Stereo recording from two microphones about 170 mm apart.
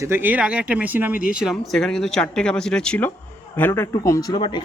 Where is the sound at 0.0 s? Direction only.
10° right (ahead or behind).